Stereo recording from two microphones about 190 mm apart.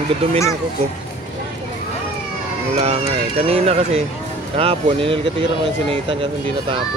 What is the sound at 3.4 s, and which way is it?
Speech, 30° right (ahead or behind).